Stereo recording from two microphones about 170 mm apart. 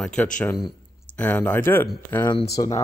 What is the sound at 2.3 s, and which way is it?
Speech, 25° left (ahead or behind).